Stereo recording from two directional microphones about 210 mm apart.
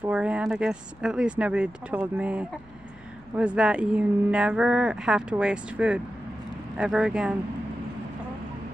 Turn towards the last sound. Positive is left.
turn(degrees=-5)  # may be behind; listen again after turning